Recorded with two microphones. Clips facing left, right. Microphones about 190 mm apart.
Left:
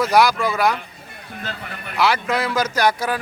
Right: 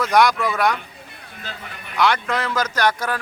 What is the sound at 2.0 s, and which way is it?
Speech, 5° left (ahead or behind).